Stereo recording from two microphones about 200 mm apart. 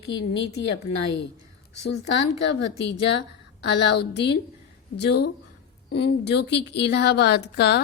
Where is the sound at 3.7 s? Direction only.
60° left (ahead or behind).